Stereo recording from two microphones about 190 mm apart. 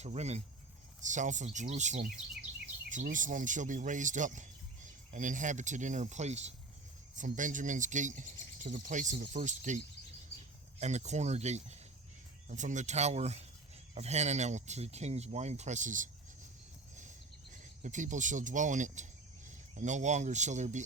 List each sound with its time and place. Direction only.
0.0 s speech: 35° right (ahead or behind)
16.9 s a sound: 40° right (ahead or behind)
19.5 s speech: 40° right (ahead or behind)